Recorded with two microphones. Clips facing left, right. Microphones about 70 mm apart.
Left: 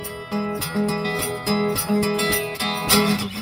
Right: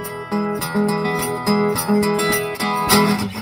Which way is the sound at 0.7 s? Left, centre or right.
Right.